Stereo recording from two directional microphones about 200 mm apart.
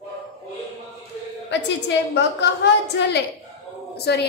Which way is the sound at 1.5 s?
60° left (ahead or behind).